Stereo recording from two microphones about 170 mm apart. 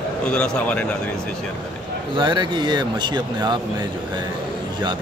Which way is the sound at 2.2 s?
25° right (ahead or behind).